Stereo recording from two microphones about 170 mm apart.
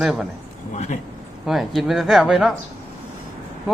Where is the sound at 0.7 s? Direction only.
40° left (ahead or behind).